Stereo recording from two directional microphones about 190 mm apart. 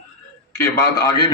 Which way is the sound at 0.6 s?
15° left (ahead or behind).